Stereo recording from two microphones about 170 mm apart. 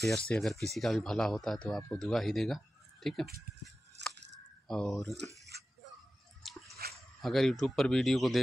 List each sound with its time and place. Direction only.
0.0 s speech: 5° left (ahead or behind)
4.0 s a sound: 90° right
4.6 s speech: 5° left (ahead or behind)
5.5 s a sound: 75° right (ahead or behind)
6.4 s dog: centre (ahead or behind)
7.2 s speech: centre (ahead or behind)